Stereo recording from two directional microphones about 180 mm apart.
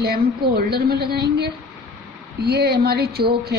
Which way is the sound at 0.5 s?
60° right (ahead or behind).